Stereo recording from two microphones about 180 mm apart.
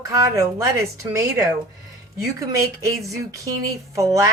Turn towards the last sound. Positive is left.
turn(degrees=-15)  # may be behind; listen again after turning